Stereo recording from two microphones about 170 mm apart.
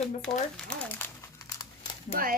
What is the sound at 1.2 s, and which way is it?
Crumpling, 25° left (ahead or behind).